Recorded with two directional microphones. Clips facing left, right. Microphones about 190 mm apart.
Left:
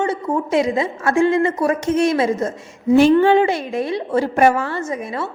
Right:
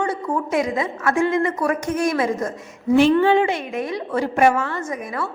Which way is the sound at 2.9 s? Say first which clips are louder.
Left 3 dB; 40° left (ahead or behind).